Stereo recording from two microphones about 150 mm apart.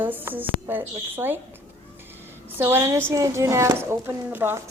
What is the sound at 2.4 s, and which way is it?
A woman's voice, 15° right (ahead or behind).